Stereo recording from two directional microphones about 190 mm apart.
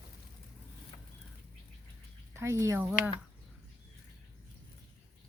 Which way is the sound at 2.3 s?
15° right (ahead or behind).